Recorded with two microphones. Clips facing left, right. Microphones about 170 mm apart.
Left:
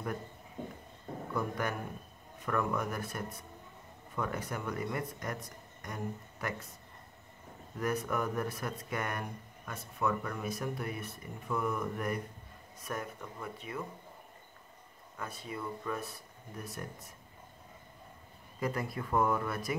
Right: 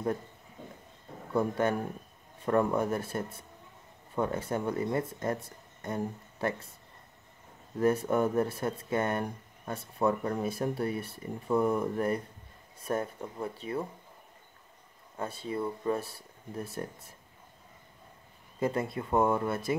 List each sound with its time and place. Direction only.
0.6 s train: 50° left (ahead or behind)
1.3 s speech: 25° right (ahead or behind)
7.8 s speech: 30° right (ahead or behind)
15.1 s speech: 30° right (ahead or behind)
18.6 s speech: 25° right (ahead or behind)